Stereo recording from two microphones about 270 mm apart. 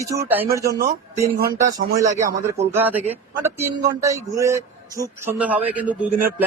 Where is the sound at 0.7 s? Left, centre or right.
Right.